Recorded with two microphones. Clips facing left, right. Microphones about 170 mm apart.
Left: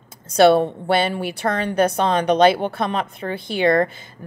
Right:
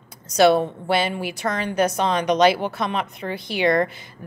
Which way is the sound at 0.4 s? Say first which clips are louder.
Left 3 dB; 60° left (ahead or behind).